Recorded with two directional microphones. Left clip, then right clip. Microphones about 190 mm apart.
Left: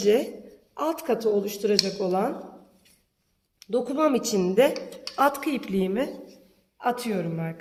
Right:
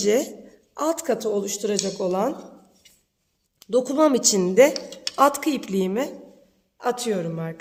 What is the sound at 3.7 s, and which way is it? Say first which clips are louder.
A woman's voice: right 4 dB; 50° right (ahead or behind).